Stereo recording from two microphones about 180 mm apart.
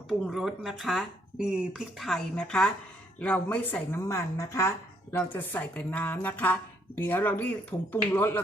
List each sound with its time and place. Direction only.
0.1 s a woman's voice: centre (ahead or behind)